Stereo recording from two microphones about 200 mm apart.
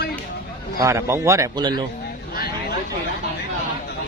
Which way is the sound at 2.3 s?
50° left (ahead or behind).